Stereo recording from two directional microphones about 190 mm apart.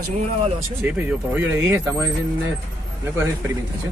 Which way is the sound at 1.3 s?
10° right (ahead or behind).